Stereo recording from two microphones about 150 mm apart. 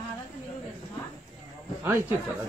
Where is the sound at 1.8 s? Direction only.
15° right (ahead or behind).